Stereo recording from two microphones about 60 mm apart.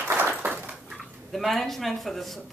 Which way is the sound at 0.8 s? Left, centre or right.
Centre.